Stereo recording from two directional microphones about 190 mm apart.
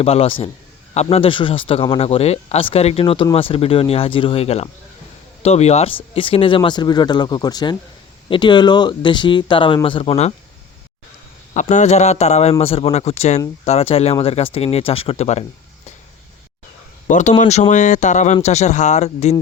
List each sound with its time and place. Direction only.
0.0 s a man's voice: 30° left (ahead or behind)
11.5 s a man's voice: 40° left (ahead or behind)
17.1 s a man's voice: 40° left (ahead or behind)